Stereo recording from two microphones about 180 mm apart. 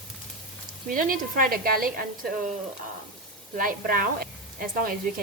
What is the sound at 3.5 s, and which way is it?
A woman's voice, 50° right (ahead or behind).